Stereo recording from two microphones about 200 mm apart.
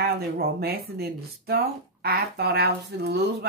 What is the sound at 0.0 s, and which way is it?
Speech, 50° right (ahead or behind).